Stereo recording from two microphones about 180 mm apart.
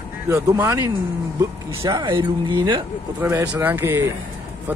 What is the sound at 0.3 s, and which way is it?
Speech, 15° right (ahead or behind).